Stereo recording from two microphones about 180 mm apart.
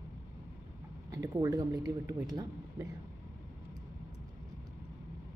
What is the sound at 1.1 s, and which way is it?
Speech, 20° right (ahead or behind).